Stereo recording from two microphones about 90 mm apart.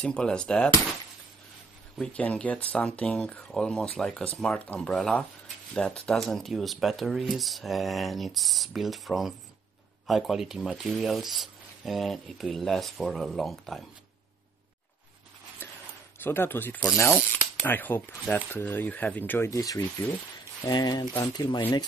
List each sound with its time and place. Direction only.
0.0 s speech: 10° left (ahead or behind)
2.1 s speech: 15° left (ahead or behind)
15.6 s a sound: 25° left (ahead or behind)
16.2 s speech: 25° left (ahead or behind)
16.9 s speech: 35° left (ahead or behind)
17.6 s speech: 20° left (ahead or behind)
19.5 s speech: 40° left (ahead or behind)